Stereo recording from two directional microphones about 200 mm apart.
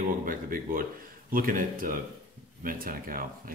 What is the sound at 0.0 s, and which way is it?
Speech, 45° right (ahead or behind).